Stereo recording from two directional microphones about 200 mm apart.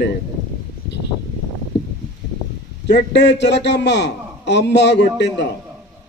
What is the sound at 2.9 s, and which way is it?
A man's voice, 60° left (ahead or behind).